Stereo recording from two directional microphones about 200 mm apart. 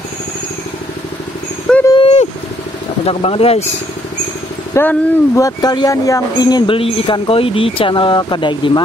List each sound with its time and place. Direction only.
1.9 s a sound: 25° left (ahead or behind)
3.1 s speech: 30° left (ahead or behind)
4.7 s speech: 15° left (ahead or behind)